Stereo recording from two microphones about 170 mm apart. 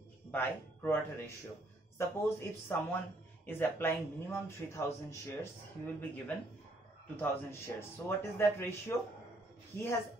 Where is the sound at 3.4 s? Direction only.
10° left (ahead or behind).